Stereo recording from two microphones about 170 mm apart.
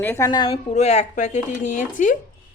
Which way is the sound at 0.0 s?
10° left (ahead or behind).